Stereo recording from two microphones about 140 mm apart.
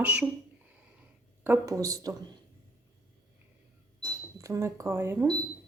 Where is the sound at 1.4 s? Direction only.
20° right (ahead or behind).